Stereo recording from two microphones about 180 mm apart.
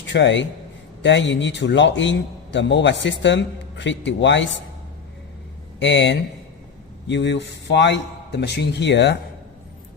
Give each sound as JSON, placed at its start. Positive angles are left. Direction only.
{"t": 0.1, "sound": "a man's voice", "side_deg": 80}
{"t": 5.8, "sound": "a man's voice", "side_deg": 85}